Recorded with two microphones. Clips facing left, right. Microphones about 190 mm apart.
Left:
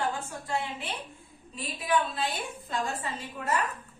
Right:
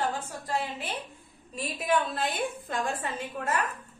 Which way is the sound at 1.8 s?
50° right (ahead or behind).